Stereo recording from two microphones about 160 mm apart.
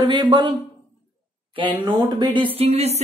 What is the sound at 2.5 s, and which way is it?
Speech, 40° right (ahead or behind).